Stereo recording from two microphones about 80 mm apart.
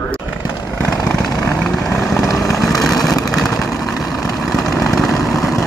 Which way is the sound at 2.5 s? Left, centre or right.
Centre.